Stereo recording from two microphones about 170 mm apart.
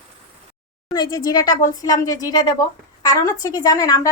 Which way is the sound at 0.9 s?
25° left (ahead or behind).